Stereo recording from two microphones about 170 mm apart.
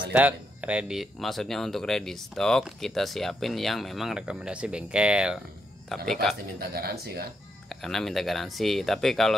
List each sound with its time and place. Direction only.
0.1 s speech: 10° right (ahead or behind)
6.6 s speech: 65° right (ahead or behind)
7.7 s speech: centre (ahead or behind)